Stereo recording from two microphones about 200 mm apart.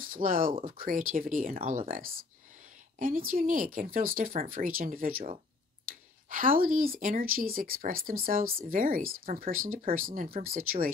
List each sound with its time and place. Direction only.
0.0 s speech: 45° right (ahead or behind)
6.2 s speech: 45° right (ahead or behind)